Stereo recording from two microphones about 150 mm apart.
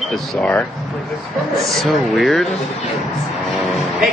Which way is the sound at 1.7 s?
Centre (ahead or behind).